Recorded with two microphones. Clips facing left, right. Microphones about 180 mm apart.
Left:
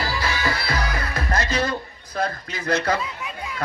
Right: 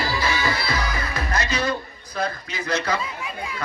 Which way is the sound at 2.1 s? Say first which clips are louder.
Left 1 dB; 50° left (ahead or behind).